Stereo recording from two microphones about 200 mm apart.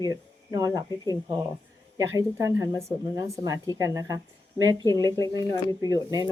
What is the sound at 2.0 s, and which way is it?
Speech, 15° right (ahead or behind).